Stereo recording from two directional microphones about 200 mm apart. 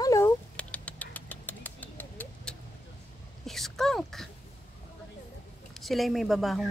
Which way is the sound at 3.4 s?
Centre (ahead or behind).